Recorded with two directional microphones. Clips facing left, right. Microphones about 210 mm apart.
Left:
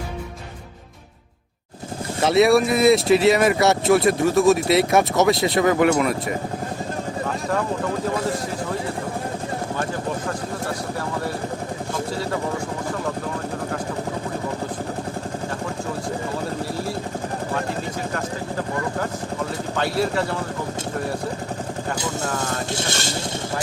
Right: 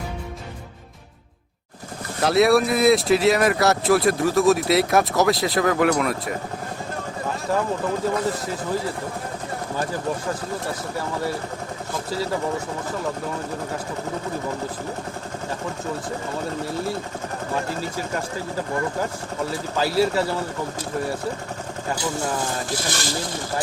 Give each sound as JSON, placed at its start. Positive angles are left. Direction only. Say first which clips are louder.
{"t": 2.2, "sound": "speech", "louder": "left 1 dB", "side_deg": 0}
{"t": 8.3, "sound": "speech", "louder": "even", "side_deg": 0}
{"t": 12.1, "sound": "speech", "louder": "right 3 dB", "side_deg": 0}
{"t": 16.7, "sound": "speech", "louder": "right 1 dB", "side_deg": 0}
{"t": 19.7, "sound": "speech", "louder": "right 2 dB", "side_deg": 0}
{"t": 22.0, "sound": "speech", "louder": "right 2 dB", "side_deg": -20}
{"t": 22.7, "sound": "speech", "louder": "left 1 dB", "side_deg": 25}